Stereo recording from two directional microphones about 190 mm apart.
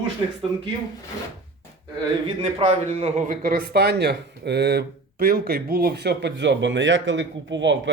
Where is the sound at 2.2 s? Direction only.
30° right (ahead or behind).